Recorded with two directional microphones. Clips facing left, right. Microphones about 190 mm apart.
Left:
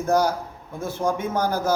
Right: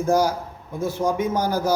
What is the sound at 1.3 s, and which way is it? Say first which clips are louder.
Speech: right 1 dB; 55° left (ahead or behind).